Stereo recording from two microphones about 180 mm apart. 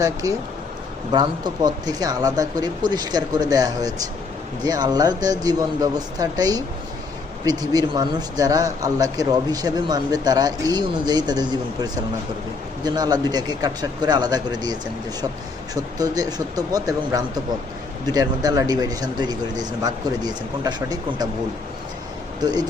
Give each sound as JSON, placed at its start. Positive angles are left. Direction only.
{"t": 0.0, "sound": "speech", "side_deg": -20}
{"t": 22.4, "sound": "speech", "side_deg": -20}